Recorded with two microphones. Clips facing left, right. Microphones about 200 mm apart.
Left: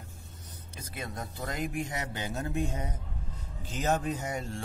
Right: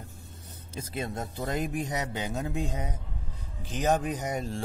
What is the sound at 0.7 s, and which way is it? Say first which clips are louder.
Speech: right 6 dB; 25° right (ahead or behind).